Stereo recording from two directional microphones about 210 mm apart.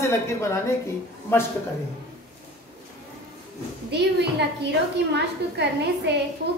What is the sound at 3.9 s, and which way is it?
A woman's voice, 50° right (ahead or behind).